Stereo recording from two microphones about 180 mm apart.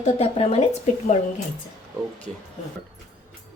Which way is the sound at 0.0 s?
35° left (ahead or behind).